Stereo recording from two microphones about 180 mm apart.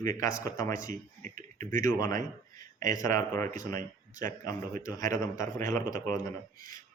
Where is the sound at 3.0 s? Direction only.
15° left (ahead or behind).